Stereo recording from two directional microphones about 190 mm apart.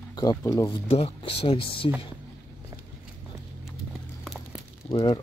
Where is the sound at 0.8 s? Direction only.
30° left (ahead or behind).